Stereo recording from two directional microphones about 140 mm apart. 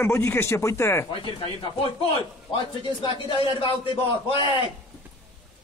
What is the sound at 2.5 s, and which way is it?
A man's voice, 35° left (ahead or behind).